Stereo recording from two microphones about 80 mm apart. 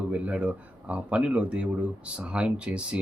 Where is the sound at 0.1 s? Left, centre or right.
Centre.